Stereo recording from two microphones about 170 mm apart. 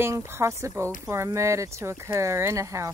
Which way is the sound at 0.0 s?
15° right (ahead or behind).